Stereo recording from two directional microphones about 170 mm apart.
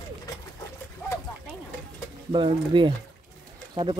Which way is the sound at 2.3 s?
30° right (ahead or behind).